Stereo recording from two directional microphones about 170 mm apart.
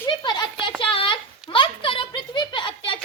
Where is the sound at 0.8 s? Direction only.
30° left (ahead or behind).